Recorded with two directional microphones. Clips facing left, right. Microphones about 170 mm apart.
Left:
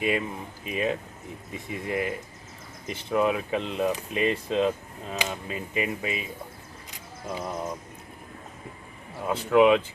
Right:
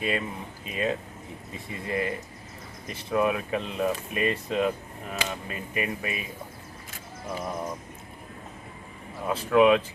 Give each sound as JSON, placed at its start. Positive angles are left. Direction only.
{"t": 0.0, "sound": "speech", "side_deg": 15}
{"t": 6.9, "sound": "music", "side_deg": 20}
{"t": 9.5, "sound": "speech", "side_deg": 15}